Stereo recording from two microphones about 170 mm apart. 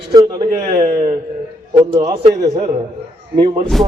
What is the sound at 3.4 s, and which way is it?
Speech, 30° right (ahead or behind).